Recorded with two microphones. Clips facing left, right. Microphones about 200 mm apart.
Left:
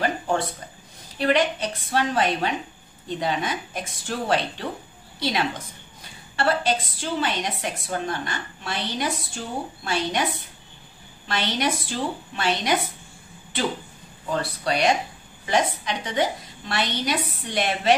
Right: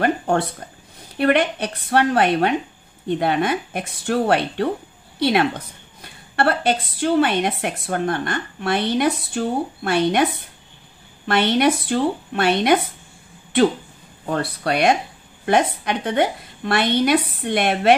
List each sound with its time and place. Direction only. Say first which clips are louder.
0.0 s a sound: right 5 dB; 60° right (ahead or behind)
1.1 s a woman's voice: right 4 dB; 55° right (ahead or behind)
11.2 s a woman's voice: right 8 dB; 55° right (ahead or behind)
14.3 s a woman's voice: right 3 dB; 60° right (ahead or behind)